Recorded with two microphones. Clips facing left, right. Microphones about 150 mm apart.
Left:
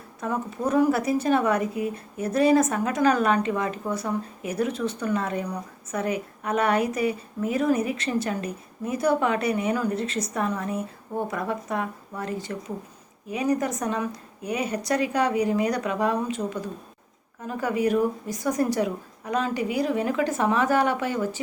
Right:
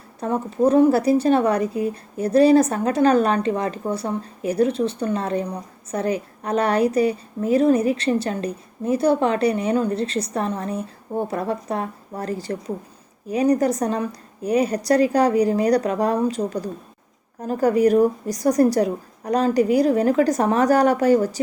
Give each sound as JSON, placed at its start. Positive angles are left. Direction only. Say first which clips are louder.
{"t": 0.2, "sound": "a woman's voice", "louder": "right 7 dB", "side_deg": -30}